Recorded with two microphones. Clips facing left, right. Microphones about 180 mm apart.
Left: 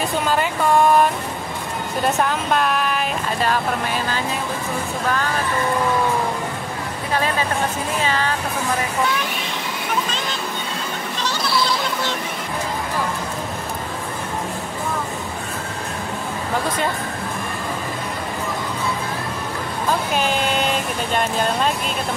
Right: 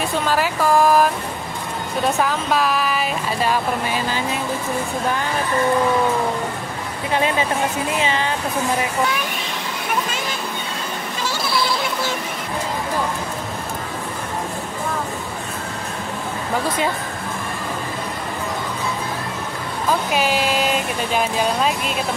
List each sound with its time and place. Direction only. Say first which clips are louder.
0.3 s speech: right 1 dB; centre (ahead or behind)
8.0 s speech: left 1 dB; 20° right (ahead or behind)
20.1 s speech: right 1 dB; 5° right (ahead or behind)